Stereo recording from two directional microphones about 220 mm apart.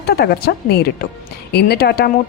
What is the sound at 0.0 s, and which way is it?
A woman's voice, 45° left (ahead or behind).